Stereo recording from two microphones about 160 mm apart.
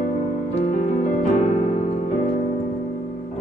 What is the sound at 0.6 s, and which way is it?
Music, 45° left (ahead or behind).